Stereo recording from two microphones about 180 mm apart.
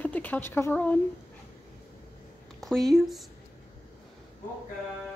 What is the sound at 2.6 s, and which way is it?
Speech, centre (ahead or behind).